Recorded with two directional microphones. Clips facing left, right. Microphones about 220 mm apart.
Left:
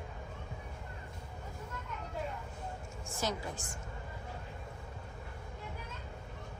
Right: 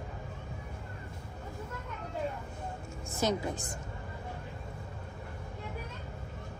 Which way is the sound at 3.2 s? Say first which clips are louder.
Right 6 dB; 20° right (ahead or behind).